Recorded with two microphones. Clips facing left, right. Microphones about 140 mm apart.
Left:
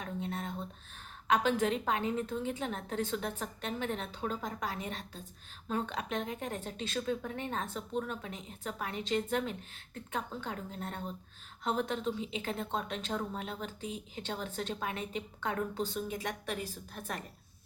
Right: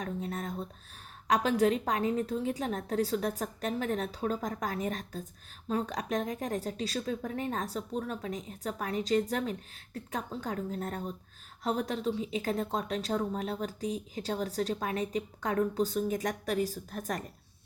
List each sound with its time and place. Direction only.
0.0 s a woman's voice: 40° right (ahead or behind)